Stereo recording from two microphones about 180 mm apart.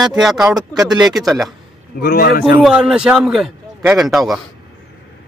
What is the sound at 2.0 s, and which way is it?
Speech, 60° left (ahead or behind).